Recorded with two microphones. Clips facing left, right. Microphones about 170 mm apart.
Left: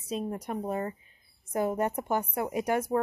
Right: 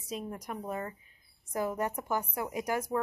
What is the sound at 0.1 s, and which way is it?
Speech, 30° left (ahead or behind).